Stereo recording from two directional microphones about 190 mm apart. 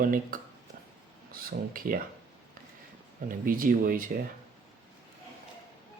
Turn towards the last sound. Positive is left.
turn(degrees=-45)  # may be behind; listen again after turning